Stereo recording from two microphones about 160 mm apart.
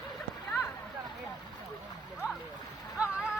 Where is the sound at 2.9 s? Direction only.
5° right (ahead or behind).